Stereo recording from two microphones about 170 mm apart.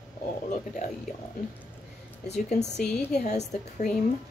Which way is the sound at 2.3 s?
40° left (ahead or behind).